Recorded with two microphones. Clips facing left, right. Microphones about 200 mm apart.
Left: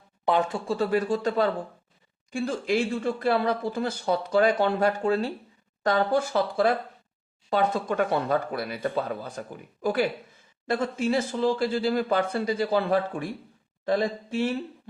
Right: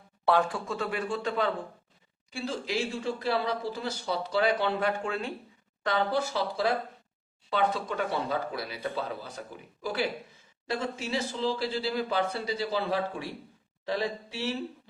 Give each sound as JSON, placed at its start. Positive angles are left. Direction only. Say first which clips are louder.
{"t": 0.3, "sound": "speech", "louder": "left 1 dB", "side_deg": 20}
{"t": 0.7, "sound": "a man's voice", "louder": "left 7 dB", "side_deg": 35}
{"t": 2.3, "sound": "speech", "louder": "left 6 dB", "side_deg": 50}